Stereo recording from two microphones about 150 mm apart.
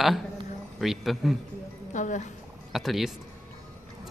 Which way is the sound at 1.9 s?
55° left (ahead or behind).